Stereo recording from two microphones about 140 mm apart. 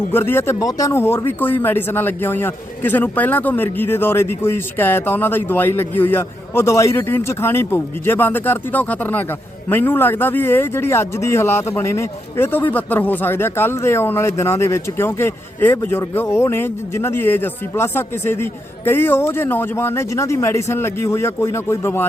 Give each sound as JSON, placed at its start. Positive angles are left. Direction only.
{"t": 0.1, "sound": "speech", "side_deg": 15}